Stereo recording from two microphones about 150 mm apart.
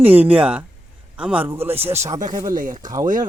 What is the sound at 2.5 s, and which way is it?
Speech, 65° right (ahead or behind).